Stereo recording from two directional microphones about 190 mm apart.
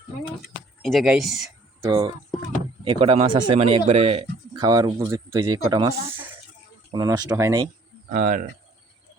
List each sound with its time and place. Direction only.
0.9 s speech: centre (ahead or behind)
1.9 s speech: 25° right (ahead or behind)
4.6 s speech: 20° right (ahead or behind)
6.9 s speech: 20° right (ahead or behind)
8.1 s speech: 45° right (ahead or behind)